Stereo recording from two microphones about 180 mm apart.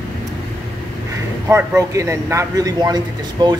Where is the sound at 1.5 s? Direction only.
15° right (ahead or behind).